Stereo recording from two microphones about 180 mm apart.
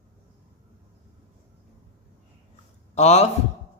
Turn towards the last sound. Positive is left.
turn(degrees=40)  # may be behind; listen again after turning